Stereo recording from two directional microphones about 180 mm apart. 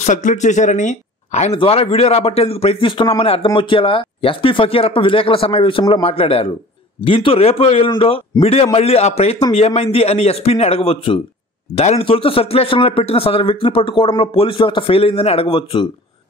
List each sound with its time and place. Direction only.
0.0 s speech: 45° left (ahead or behind); by 15.9 s 30° left (ahead or behind)